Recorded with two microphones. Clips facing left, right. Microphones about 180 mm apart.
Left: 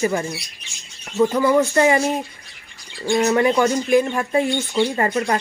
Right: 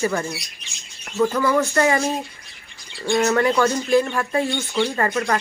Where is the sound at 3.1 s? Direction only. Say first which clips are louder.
Left 1 dB; 20° left (ahead or behind).